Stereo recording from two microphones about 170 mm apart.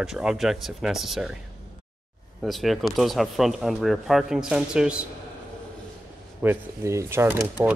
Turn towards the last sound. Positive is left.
turn(degrees=-15)  # may be behind; listen again after turning